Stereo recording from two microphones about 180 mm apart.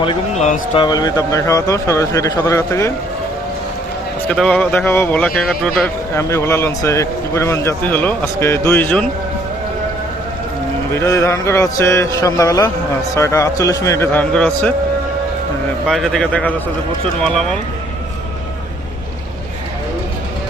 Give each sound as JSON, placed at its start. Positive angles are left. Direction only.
{"t": 0.0, "sound": "a man's voice", "side_deg": 30}
{"t": 4.3, "sound": "a man's voice", "side_deg": 5}
{"t": 10.9, "sound": "a man's voice", "side_deg": 15}
{"t": 15.9, "sound": "a man's voice", "side_deg": 0}